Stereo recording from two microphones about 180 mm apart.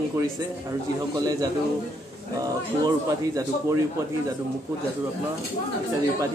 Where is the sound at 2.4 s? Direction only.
20° right (ahead or behind).